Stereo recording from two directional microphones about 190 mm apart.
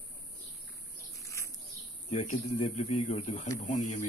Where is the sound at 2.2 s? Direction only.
40° left (ahead or behind).